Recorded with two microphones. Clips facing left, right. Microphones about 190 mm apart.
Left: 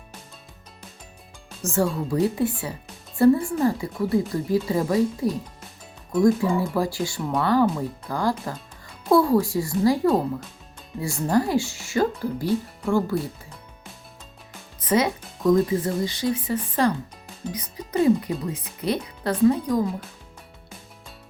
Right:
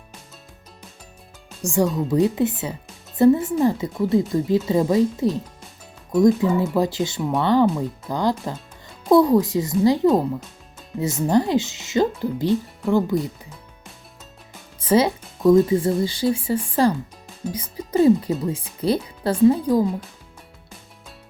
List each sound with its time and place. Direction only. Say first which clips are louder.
1.6 s speech: right 3 dB; 15° right (ahead or behind)
1.9 s speech: right 4 dB; centre (ahead or behind)
2.2 s speech: right 3 dB; 20° right (ahead or behind)
7.2 s speech: right 2 dB; centre (ahead or behind)
7.4 s speech: right 3 dB; 20° right (ahead or behind)
14.8 s speech: right 4 dB; 30° right (ahead or behind)